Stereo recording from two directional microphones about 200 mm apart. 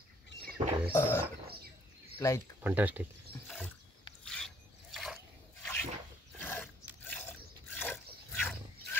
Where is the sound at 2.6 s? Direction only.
10° right (ahead or behind).